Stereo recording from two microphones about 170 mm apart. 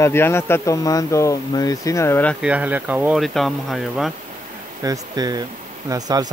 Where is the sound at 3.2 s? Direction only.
Centre (ahead or behind).